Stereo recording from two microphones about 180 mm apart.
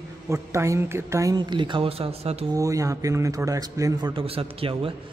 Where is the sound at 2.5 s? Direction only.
20° right (ahead or behind).